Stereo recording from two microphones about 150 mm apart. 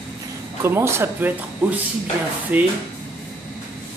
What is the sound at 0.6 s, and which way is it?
Speech, 15° right (ahead or behind).